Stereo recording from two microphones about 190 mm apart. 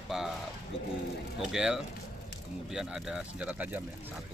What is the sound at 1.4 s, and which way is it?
Speech, 5° right (ahead or behind).